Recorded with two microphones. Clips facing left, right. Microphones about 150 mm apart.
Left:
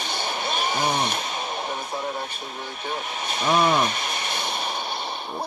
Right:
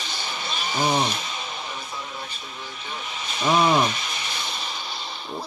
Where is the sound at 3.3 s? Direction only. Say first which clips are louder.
Right 1 dB; 55° left (ahead or behind).